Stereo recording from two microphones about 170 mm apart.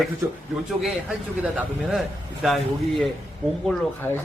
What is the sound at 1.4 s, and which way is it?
Speech, 5° right (ahead or behind).